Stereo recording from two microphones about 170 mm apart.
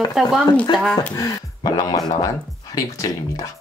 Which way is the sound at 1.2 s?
20° left (ahead or behind).